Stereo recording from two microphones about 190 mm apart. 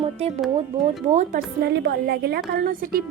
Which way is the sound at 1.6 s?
60° right (ahead or behind).